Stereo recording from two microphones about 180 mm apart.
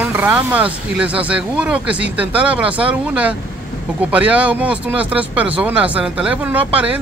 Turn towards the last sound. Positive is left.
turn(degrees=-10)  # may be behind; listen again after turning